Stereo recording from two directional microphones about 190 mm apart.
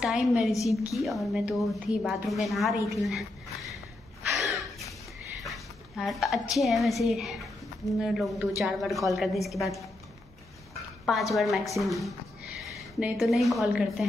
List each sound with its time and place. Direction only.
0.0 s a woman's voice: 5° right (ahead or behind)
4.3 s a sound: centre (ahead or behind)
5.4 s a woman's voice: centre (ahead or behind)
11.3 s a woman's voice: centre (ahead or behind)